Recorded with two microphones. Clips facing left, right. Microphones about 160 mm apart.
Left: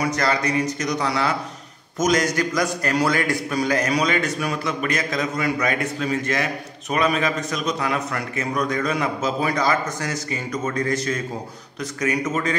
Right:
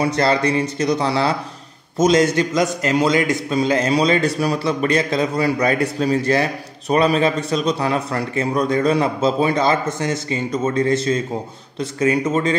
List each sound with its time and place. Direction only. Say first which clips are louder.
0.0 s a man's voice: right 5 dB; 30° right (ahead or behind)